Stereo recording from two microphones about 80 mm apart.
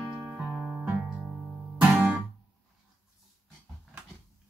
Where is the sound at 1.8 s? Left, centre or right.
Centre.